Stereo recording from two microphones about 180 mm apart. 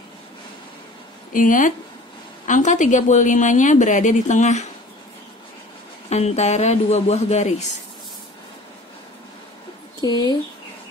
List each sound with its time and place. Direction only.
1.3 s a woman's voice: 50° left (ahead or behind)
6.0 s speech: 40° left (ahead or behind)
10.0 s speech: 20° left (ahead or behind)